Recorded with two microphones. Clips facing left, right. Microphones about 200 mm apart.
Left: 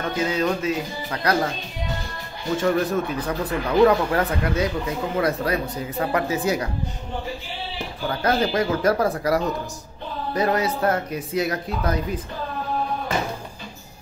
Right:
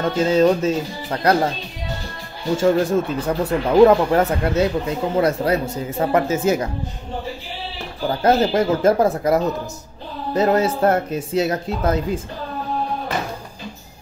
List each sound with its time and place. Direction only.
0.2 s speech: 25° right (ahead or behind)
2.5 s speech: 25° right (ahead or behind)
8.1 s speech: 25° right (ahead or behind)